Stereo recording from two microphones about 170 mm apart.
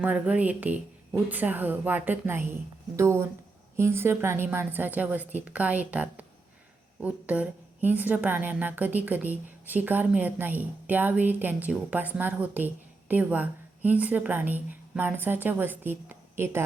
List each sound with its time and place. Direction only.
0.0 s a woman's voice: 10° right (ahead or behind)